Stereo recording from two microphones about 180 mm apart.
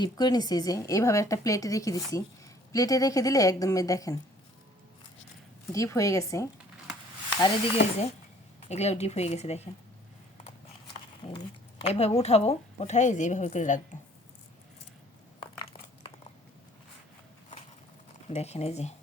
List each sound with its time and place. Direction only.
0.0 s a woman's voice: 20° left (ahead or behind)
5.7 s a woman's voice: 15° left (ahead or behind)
8.6 s a woman's voice: 35° left (ahead or behind)
11.2 s a sound: 25° left (ahead or behind)
11.9 s a woman's voice: 35° left (ahead or behind)
18.3 s a woman's voice: 35° left (ahead or behind)